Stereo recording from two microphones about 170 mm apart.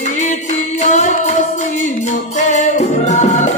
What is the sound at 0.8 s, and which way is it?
Music, 45° left (ahead or behind).